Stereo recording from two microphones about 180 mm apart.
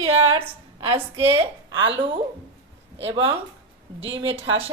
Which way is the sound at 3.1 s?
30° right (ahead or behind).